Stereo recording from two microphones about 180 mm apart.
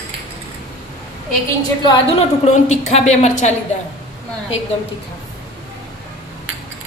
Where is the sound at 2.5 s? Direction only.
40° left (ahead or behind).